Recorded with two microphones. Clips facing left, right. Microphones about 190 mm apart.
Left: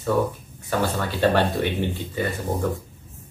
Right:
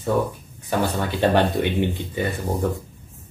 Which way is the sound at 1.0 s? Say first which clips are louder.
Right 1 dB; 20° right (ahead or behind).